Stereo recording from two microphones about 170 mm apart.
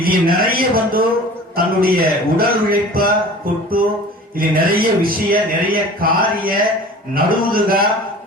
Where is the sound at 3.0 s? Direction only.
60° right (ahead or behind).